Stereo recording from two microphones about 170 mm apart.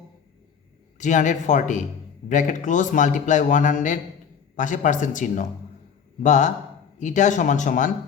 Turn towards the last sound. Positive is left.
turn(degrees=50)  # may be behind; listen again after turning